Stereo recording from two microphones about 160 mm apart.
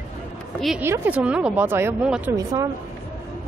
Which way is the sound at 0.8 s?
15° right (ahead or behind).